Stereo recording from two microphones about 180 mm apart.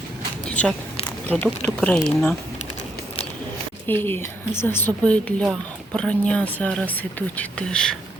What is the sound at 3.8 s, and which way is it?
Speech, 10° left (ahead or behind).